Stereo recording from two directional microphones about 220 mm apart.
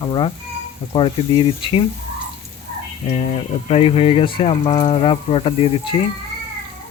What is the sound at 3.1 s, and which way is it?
Speech, 25° left (ahead or behind).